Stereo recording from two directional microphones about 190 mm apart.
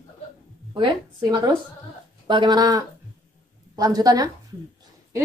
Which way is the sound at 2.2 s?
25° right (ahead or behind).